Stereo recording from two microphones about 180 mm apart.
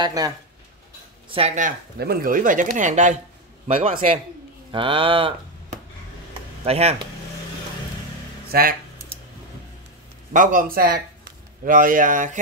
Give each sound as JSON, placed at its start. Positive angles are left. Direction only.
{"t": 0.0, "sound": "speech", "side_deg": -20}
{"t": 1.3, "sound": "speech", "side_deg": -35}
{"t": 2.0, "sound": "a man's voice", "side_deg": -55}
{"t": 6.6, "sound": "speech", "side_deg": -35}
{"t": 8.5, "sound": "speech", "side_deg": -55}
{"t": 10.3, "sound": "speech", "side_deg": -50}